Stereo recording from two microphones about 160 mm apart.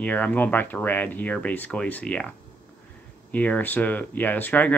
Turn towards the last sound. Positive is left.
turn(degrees=10)  # may be behind; listen again after turning